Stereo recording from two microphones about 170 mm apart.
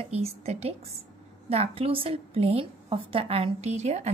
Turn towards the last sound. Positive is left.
turn(degrees=-40)  # may be behind; listen again after turning